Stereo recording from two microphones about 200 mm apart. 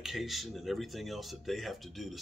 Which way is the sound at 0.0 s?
Centre (ahead or behind).